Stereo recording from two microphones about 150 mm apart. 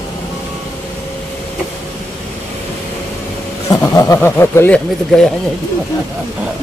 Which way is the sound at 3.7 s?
20° left (ahead or behind).